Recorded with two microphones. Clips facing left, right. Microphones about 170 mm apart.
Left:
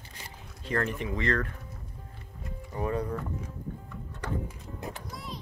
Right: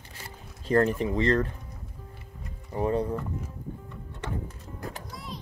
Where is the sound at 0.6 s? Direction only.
35° right (ahead or behind).